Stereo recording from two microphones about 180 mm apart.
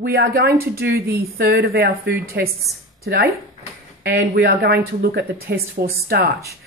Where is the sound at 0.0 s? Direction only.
55° right (ahead or behind).